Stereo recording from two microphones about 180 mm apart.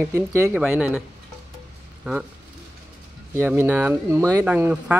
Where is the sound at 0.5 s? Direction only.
5° right (ahead or behind).